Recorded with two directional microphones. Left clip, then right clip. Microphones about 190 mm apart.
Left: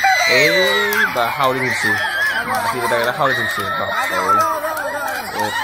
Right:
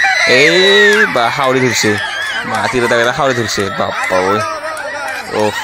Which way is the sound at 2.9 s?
40° right (ahead or behind).